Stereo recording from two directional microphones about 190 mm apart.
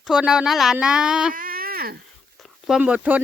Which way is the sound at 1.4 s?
50° right (ahead or behind).